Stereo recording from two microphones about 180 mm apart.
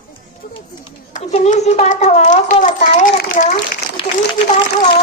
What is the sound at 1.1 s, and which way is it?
A child's voice, 40° left (ahead or behind).